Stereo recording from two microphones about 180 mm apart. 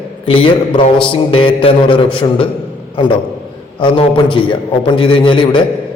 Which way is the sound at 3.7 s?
30° left (ahead or behind).